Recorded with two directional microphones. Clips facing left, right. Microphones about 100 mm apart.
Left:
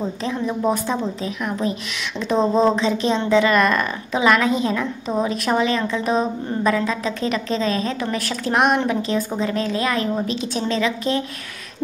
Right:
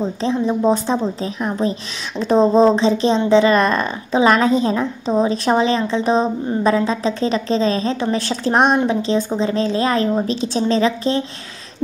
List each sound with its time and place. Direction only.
0.0 s a woman's voice: 30° right (ahead or behind)